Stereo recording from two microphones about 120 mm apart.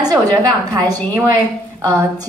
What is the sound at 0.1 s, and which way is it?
Speech, 30° right (ahead or behind).